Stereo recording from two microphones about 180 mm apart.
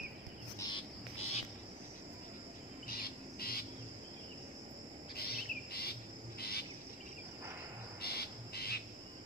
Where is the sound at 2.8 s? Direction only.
55° left (ahead or behind).